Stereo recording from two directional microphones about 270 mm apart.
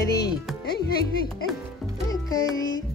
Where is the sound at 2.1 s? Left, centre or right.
Centre.